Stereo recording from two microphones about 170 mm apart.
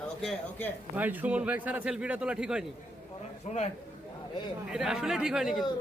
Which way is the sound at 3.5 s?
40° left (ahead or behind).